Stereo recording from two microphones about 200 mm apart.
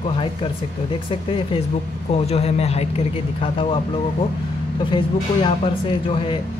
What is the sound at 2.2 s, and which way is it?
Speech, 30° left (ahead or behind).